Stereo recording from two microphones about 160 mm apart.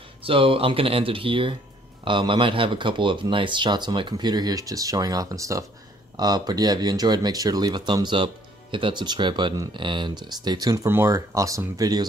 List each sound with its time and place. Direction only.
0.2 s speech: 35° right (ahead or behind)